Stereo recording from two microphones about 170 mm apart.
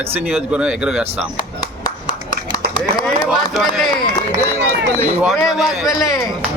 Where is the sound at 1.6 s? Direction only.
20° left (ahead or behind).